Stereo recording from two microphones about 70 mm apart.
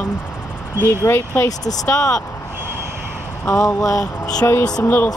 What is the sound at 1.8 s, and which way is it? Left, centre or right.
Speech, left.